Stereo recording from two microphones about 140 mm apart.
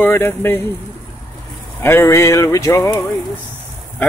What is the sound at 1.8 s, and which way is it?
Music, 20° left (ahead or behind).